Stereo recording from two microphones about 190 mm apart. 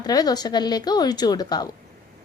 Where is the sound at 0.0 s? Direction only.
20° left (ahead or behind).